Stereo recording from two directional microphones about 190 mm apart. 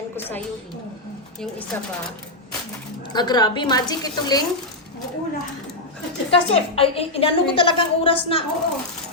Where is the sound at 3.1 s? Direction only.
20° left (ahead or behind).